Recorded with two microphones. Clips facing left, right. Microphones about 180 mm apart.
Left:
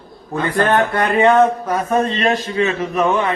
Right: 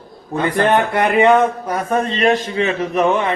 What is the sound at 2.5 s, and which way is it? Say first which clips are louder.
Speech: even; 20° right (ahead or behind).